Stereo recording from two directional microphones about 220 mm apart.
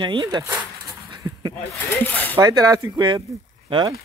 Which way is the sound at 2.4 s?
15° right (ahead or behind).